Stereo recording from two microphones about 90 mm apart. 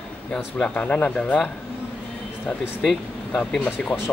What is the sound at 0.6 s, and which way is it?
Speech, 10° left (ahead or behind).